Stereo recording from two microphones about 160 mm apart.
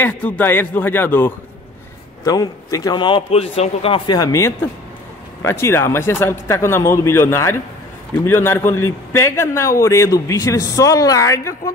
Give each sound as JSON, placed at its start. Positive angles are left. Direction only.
{"t": 0.0, "sound": "speech", "side_deg": 10}
{"t": 2.2, "sound": "a man's voice", "side_deg": 25}